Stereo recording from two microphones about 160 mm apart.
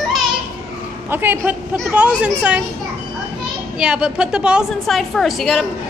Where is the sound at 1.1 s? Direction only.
15° right (ahead or behind).